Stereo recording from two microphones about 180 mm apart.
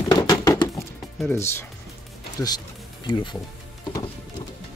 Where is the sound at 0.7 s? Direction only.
Centre (ahead or behind).